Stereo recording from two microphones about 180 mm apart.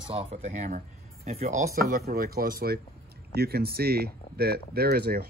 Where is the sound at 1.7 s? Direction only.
55° right (ahead or behind).